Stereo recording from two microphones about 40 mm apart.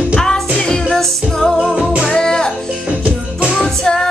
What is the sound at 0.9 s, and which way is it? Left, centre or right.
Music, centre.